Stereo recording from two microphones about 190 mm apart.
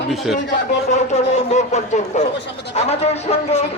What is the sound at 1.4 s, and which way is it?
Speech, 35° left (ahead or behind).